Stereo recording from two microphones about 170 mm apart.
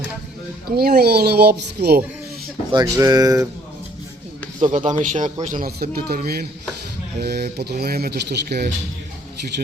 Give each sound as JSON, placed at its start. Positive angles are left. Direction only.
{"t": 0.8, "sound": "speech", "side_deg": -65}
{"t": 2.7, "sound": "speech", "side_deg": -20}
{"t": 4.6, "sound": "a man's voice", "side_deg": -45}